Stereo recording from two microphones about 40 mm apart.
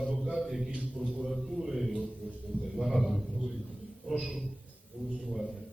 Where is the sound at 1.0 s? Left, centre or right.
Right.